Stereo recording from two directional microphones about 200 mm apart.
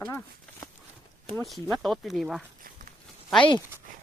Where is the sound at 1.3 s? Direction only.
Centre (ahead or behind).